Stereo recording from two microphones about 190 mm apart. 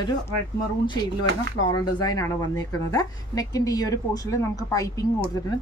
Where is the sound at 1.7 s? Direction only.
20° left (ahead or behind).